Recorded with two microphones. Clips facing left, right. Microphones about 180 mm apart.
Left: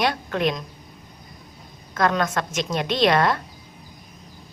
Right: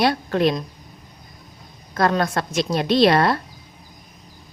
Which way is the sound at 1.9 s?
35° right (ahead or behind).